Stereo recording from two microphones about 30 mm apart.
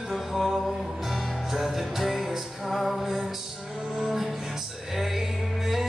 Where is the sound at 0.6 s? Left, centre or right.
Centre.